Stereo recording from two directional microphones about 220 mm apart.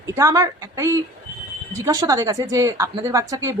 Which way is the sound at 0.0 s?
15° right (ahead or behind).